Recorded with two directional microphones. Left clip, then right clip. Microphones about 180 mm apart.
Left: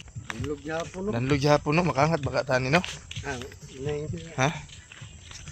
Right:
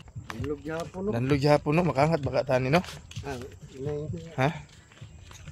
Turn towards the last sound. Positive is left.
turn(degrees=-15)  # may be behind; listen again after turning